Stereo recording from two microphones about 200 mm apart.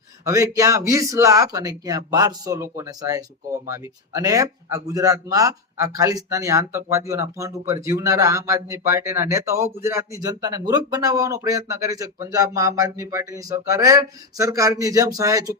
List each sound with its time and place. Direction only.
0.3 s speech: 15° right (ahead or behind)